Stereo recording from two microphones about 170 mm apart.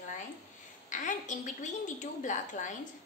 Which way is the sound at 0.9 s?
45° left (ahead or behind).